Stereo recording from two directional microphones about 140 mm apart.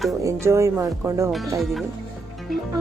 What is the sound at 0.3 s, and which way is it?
Speech, 20° right (ahead or behind).